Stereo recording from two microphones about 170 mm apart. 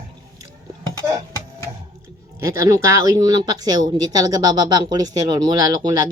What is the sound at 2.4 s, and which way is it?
Speech, 15° right (ahead or behind).